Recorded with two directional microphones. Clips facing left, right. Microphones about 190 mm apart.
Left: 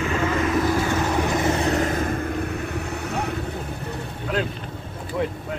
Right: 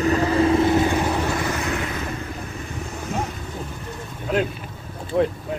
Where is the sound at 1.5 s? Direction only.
35° left (ahead or behind); by 3.4 s 65° left (ahead or behind).